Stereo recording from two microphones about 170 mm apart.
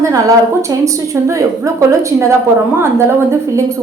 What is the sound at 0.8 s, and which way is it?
A woman's voice, 20° right (ahead or behind).